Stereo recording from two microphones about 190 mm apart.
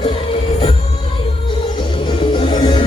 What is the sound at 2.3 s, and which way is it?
Music, 25° left (ahead or behind).